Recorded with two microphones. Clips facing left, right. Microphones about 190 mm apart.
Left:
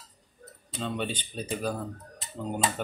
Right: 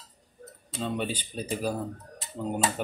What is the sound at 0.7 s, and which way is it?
Speech, 5° right (ahead or behind).